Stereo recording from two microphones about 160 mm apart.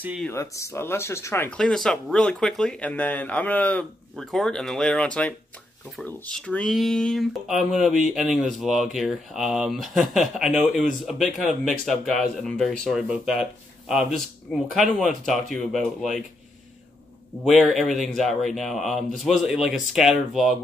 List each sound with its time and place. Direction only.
0.3 s speech: 20° left (ahead or behind)
1.6 s speech: 5° left (ahead or behind)
17.5 s speech: centre (ahead or behind)